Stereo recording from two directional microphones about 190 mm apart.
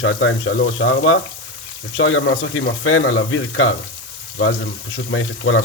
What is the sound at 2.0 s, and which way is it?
Speech, 90° left.